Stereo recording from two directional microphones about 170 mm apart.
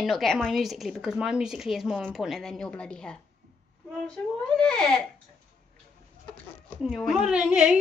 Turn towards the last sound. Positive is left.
turn(degrees=-5)  # may be behind; listen again after turning